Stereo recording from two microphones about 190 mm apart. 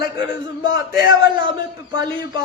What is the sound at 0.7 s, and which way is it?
Speech, 55° left (ahead or behind).